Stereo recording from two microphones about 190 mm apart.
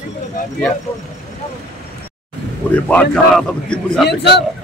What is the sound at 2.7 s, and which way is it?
Speech, 5° left (ahead or behind).